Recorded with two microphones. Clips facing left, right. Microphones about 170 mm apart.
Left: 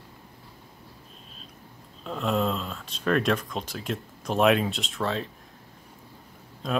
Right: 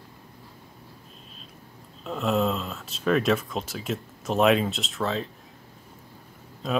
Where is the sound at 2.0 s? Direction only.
Centre (ahead or behind).